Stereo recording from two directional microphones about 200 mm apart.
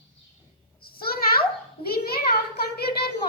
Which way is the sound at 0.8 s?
50° left (ahead or behind).